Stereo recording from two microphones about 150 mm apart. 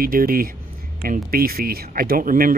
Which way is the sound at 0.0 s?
75° right (ahead or behind).